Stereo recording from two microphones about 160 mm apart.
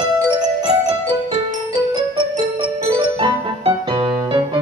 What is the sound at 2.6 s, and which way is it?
Music, 35° right (ahead or behind).